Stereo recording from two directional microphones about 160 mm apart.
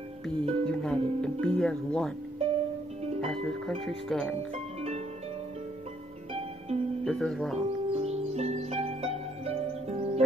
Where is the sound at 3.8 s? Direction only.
Centre (ahead or behind).